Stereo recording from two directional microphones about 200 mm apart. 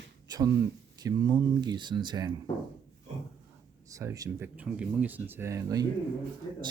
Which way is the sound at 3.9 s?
15° right (ahead or behind).